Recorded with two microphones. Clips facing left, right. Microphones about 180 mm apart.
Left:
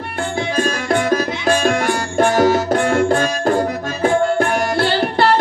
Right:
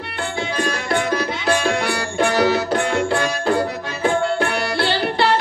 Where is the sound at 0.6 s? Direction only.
45° left (ahead or behind).